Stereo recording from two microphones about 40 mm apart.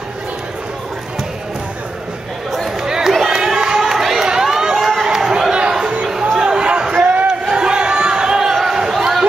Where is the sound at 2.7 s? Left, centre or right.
Centre.